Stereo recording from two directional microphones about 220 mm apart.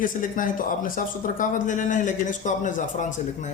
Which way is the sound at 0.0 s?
35° left (ahead or behind).